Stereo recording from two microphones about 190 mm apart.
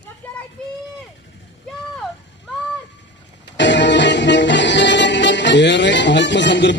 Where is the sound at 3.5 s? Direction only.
70° left (ahead or behind).